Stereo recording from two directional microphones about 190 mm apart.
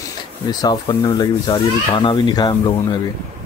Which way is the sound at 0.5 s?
20° left (ahead or behind).